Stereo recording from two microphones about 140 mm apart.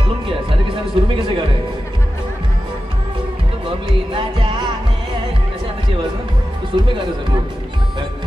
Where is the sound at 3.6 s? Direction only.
40° right (ahead or behind).